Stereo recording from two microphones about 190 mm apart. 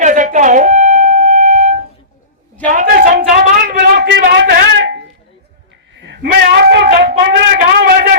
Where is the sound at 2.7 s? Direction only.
45° right (ahead or behind).